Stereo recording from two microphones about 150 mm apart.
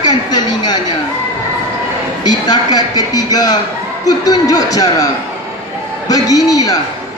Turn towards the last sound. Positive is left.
turn(degrees=25)  # may be behind; listen again after turning